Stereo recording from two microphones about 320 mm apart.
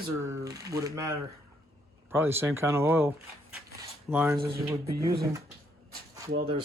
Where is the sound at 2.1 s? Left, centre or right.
Centre.